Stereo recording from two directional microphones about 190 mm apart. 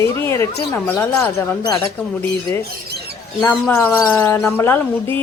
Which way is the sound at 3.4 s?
10° left (ahead or behind).